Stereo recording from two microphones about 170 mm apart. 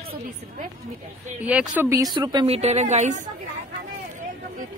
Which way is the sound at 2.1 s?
25° right (ahead or behind).